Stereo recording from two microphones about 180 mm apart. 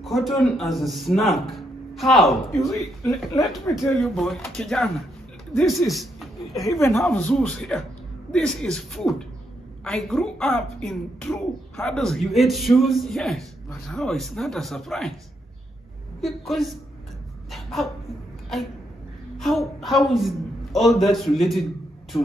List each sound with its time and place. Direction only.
0.0 s a man's voice: centre (ahead or behind)
6.6 s a man's voice: 15° left (ahead or behind)
16.2 s a man's voice: centre (ahead or behind)
17.5 s a sound: centre (ahead or behind)
19.3 s a woman's voice: centre (ahead or behind)
22.1 s speech: 20° left (ahead or behind)